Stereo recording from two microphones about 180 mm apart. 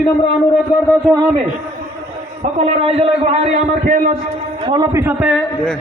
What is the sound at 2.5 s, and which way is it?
A man's voice, 35° right (ahead or behind).